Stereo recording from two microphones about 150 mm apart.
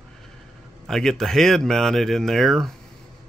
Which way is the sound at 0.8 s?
5° left (ahead or behind).